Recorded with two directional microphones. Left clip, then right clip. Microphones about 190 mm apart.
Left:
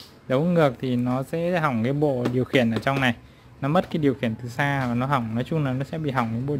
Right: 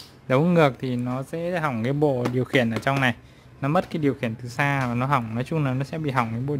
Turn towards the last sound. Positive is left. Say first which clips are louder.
# right 1 dB
turn(degrees=0)  # may be behind; listen again after turning